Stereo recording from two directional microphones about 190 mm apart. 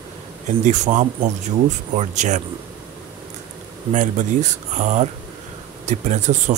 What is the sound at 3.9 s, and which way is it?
Speech, 40° right (ahead or behind).